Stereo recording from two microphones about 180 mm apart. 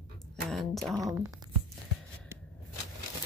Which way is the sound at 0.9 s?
15° right (ahead or behind).